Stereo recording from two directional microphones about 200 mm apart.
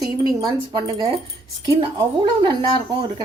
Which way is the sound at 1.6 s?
20° right (ahead or behind).